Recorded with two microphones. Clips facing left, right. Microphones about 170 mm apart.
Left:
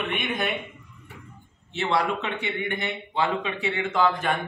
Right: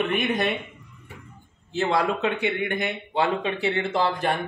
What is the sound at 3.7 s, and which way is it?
Speech, 35° right (ahead or behind).